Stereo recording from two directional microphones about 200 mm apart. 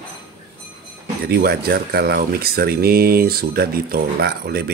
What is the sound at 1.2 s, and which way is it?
Speech, 50° right (ahead or behind).